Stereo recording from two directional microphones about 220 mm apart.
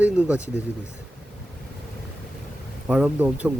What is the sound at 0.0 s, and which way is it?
Speech, 5° right (ahead or behind).